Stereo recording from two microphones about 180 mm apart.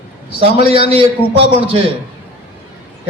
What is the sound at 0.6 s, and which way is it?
Speech, 30° right (ahead or behind).